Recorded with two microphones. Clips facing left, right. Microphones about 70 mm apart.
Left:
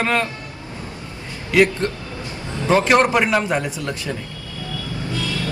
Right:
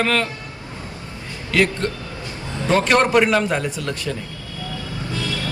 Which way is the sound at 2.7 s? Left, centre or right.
Centre.